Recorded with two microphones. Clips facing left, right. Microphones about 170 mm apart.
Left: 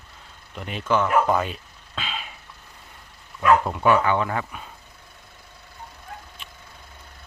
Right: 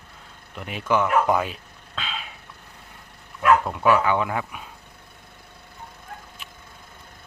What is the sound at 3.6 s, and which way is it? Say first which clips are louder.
Speech: even; centre (ahead or behind).